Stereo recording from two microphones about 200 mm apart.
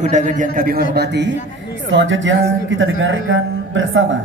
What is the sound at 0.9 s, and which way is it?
Speech, 55° right (ahead or behind).